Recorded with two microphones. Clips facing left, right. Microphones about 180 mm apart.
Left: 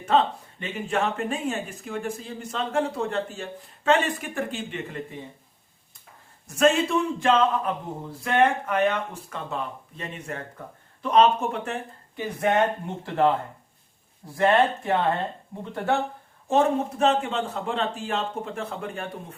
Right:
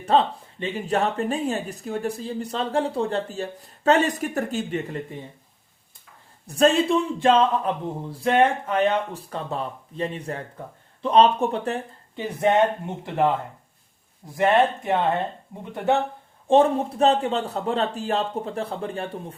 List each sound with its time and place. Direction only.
0.0 s speech: 35° right (ahead or behind)
6.5 s speech: 35° right (ahead or behind); by 13.3 s 15° right (ahead or behind)
14.3 s speech: 15° right (ahead or behind)
16.5 s speech: 30° right (ahead or behind)